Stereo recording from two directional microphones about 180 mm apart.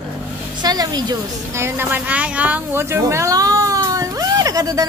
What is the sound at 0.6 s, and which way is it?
Speech, 25° right (ahead or behind).